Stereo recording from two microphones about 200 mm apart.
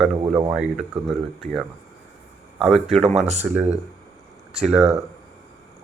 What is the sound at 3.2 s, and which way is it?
Speech, 35° right (ahead or behind).